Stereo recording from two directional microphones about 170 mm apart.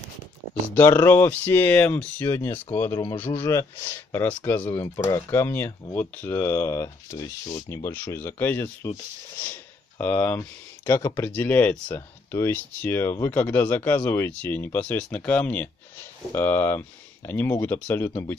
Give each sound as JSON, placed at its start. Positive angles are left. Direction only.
{"t": 0.7, "sound": "speech", "side_deg": 15}
{"t": 9.4, "sound": "a sound", "side_deg": 10}
{"t": 10.1, "sound": "speech", "side_deg": 10}